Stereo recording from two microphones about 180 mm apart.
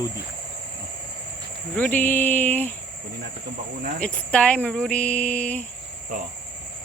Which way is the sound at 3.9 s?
5° left (ahead or behind).